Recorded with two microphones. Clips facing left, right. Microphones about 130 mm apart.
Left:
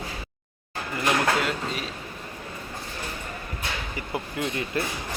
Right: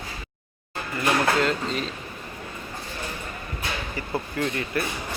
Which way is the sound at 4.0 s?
15° left (ahead or behind).